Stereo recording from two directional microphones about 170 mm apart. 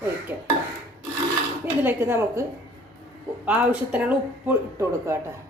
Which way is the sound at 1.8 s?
15° right (ahead or behind).